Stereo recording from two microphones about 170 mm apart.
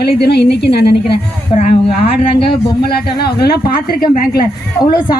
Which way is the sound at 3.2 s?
70° left (ahead or behind).